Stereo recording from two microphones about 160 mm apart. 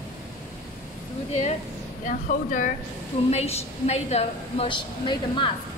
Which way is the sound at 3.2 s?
40° left (ahead or behind).